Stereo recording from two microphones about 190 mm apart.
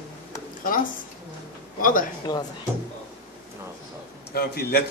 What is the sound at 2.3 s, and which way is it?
Speech, 20° left (ahead or behind).